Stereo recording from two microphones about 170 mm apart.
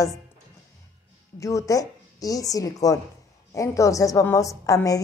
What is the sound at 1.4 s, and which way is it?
Speech, 20° left (ahead or behind).